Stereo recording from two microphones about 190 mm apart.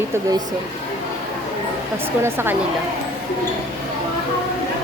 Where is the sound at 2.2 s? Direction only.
10° right (ahead or behind).